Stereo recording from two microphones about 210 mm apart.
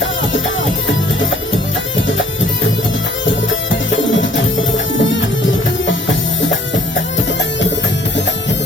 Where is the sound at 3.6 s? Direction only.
65° left (ahead or behind).